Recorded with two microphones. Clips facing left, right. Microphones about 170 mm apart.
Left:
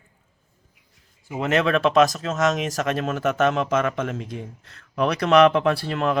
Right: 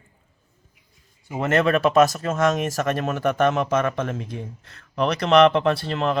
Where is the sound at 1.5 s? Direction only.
5° right (ahead or behind).